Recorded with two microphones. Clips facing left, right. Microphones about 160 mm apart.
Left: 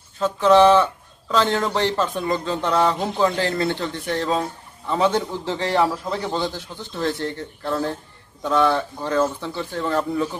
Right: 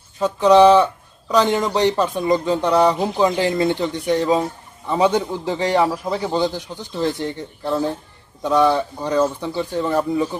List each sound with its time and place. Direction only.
0.2 s speech: 15° right (ahead or behind)